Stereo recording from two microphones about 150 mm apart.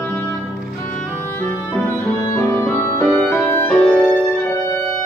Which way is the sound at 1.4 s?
10° left (ahead or behind).